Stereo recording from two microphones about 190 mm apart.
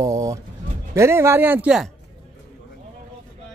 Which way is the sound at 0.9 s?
15° right (ahead or behind).